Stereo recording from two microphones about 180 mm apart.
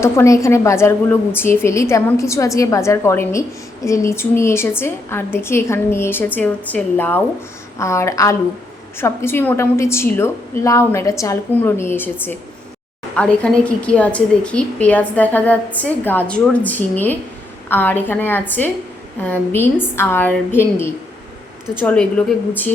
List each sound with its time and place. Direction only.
0.0 s a woman's voice: 15° left (ahead or behind)